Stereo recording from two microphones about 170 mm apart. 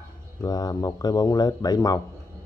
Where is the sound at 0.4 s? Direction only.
20° left (ahead or behind).